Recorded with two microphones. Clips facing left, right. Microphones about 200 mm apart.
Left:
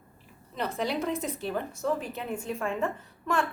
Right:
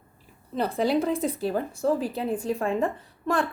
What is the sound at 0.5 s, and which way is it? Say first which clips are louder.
Speech: right 7 dB; 35° right (ahead or behind).